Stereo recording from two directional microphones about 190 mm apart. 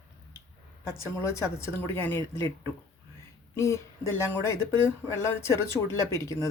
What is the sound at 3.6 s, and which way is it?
Speech, 15° left (ahead or behind).